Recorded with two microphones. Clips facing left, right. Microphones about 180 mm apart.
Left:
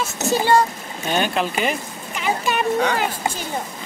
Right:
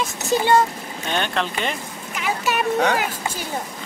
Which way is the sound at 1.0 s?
5° left (ahead or behind).